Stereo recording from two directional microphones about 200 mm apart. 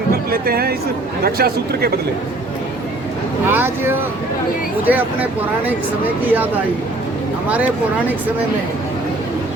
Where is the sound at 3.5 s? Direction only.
10° right (ahead or behind).